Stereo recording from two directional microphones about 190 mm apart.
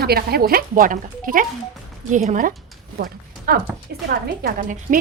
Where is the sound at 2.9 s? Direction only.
50° right (ahead or behind).